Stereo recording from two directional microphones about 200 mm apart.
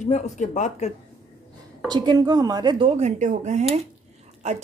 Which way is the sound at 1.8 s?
20° right (ahead or behind).